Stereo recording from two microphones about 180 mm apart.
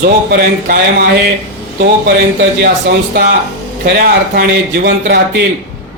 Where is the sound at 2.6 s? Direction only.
65° right (ahead or behind).